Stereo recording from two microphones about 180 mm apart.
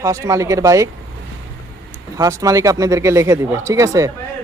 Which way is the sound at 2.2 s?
20° right (ahead or behind).